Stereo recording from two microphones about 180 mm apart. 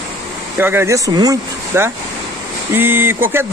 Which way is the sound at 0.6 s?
10° right (ahead or behind).